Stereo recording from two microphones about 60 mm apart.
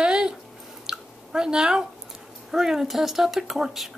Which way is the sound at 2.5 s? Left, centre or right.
Centre.